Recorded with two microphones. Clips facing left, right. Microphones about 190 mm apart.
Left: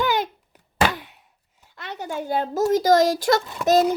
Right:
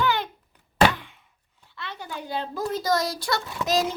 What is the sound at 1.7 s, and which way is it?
Speech, 45° left (ahead or behind).